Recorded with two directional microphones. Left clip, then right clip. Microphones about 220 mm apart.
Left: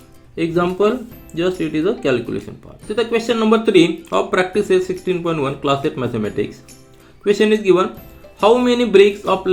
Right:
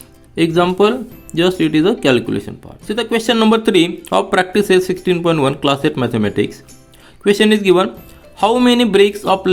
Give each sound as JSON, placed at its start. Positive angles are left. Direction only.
{"t": 0.3, "sound": "speech", "side_deg": -45}